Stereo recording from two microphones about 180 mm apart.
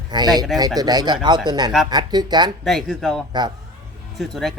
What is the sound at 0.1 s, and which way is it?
Speech, 25° right (ahead or behind).